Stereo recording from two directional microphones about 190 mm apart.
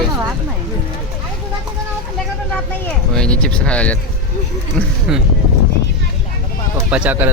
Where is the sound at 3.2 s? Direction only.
5° left (ahead or behind).